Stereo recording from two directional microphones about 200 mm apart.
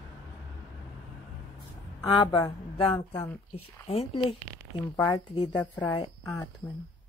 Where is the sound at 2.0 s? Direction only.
20° left (ahead or behind).